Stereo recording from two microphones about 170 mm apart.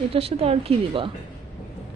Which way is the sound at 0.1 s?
35° right (ahead or behind).